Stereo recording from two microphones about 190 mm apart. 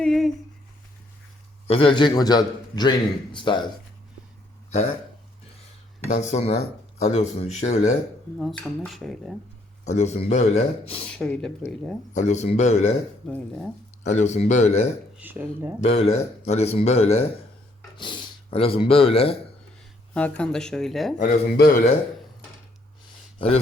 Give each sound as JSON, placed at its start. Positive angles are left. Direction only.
{"t": 0.0, "sound": "a sound", "side_deg": 0}
{"t": 1.6, "sound": "a man's voice", "side_deg": 30}
{"t": 6.1, "sound": "speech", "side_deg": 35}
{"t": 8.4, "sound": "speech", "side_deg": 0}
{"t": 9.8, "sound": "speech", "side_deg": 35}
{"t": 11.1, "sound": "speech", "side_deg": 5}
{"t": 12.1, "sound": "speech", "side_deg": 35}
{"t": 13.2, "sound": "speech", "side_deg": 5}
{"t": 14.0, "sound": "speech", "side_deg": 40}
{"t": 15.2, "sound": "speech", "side_deg": -10}
{"t": 15.8, "sound": "speech", "side_deg": 35}
{"t": 20.1, "sound": "speech", "side_deg": 5}
{"t": 21.2, "sound": "a man's voice", "side_deg": 45}